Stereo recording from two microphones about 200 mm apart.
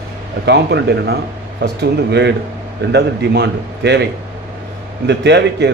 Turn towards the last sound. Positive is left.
turn(degrees=-60)  # may be behind; listen again after turning